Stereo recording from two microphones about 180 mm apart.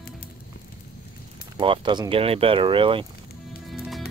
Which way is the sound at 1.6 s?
25° right (ahead or behind).